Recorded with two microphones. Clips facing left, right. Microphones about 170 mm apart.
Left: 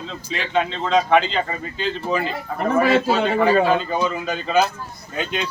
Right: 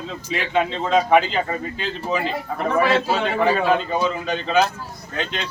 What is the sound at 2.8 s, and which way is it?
Speech, 45° left (ahead or behind).